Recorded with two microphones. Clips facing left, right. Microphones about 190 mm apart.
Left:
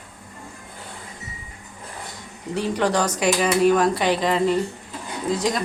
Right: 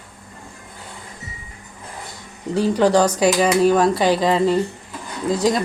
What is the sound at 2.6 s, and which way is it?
Speech, 30° right (ahead or behind).